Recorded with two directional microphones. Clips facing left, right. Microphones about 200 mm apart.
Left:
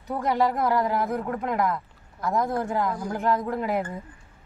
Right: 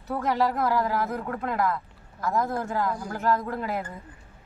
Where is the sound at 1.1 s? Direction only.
5° left (ahead or behind).